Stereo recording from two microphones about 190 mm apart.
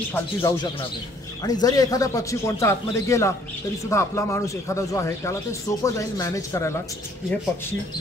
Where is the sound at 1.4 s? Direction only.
20° left (ahead or behind).